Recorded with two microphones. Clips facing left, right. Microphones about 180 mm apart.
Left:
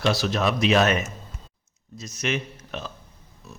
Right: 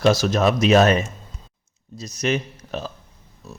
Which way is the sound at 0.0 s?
45° right (ahead or behind).